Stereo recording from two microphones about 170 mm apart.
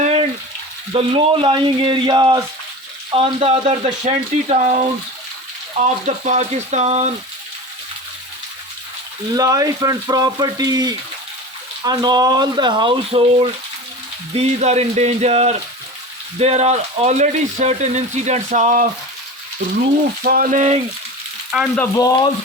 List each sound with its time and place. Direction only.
0.0 s frying: 35° right (ahead or behind)
0.9 s speech: 30° right (ahead or behind)
9.3 s speech: 20° right (ahead or behind); by 18.9 s 50° right (ahead or behind)
20.2 s speech: 55° right (ahead or behind)
21.5 s frying: 10° right (ahead or behind)
21.9 s a sound: 20° left (ahead or behind)